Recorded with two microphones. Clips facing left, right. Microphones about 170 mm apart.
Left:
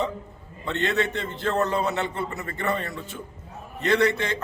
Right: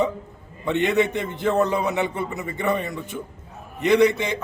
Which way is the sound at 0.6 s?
15° right (ahead or behind).